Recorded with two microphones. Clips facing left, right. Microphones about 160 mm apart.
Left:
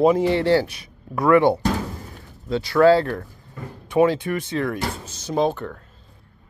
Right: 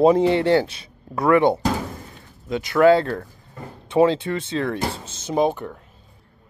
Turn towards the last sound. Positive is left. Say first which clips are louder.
# right 1 dB
turn(degrees=-15)  # may be behind; listen again after turning